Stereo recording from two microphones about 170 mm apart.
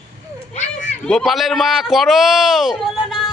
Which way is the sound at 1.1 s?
Centre (ahead or behind).